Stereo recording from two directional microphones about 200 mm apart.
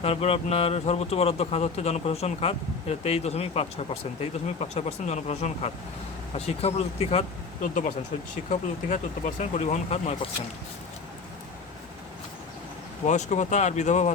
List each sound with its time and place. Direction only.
0.0 s a man's voice: 30° left (ahead or behind)
13.1 s a man's voice: 35° left (ahead or behind)